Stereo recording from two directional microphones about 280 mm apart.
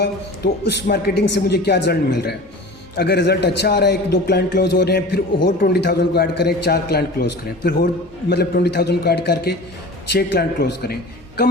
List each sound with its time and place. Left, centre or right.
0.0 s a man's voice: left